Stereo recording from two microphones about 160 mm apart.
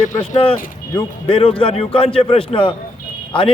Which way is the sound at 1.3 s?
35° left (ahead or behind).